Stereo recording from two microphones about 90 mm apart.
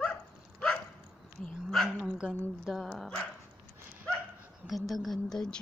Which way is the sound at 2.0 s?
10° right (ahead or behind).